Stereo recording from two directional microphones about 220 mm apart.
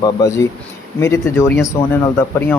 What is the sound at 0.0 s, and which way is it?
Speech, 15° left (ahead or behind).